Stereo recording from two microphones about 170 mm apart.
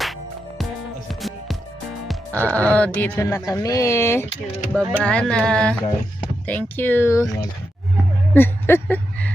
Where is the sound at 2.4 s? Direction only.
10° left (ahead or behind).